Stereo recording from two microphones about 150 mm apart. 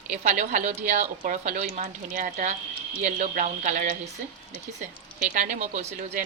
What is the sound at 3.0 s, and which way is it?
Speech, 55° right (ahead or behind).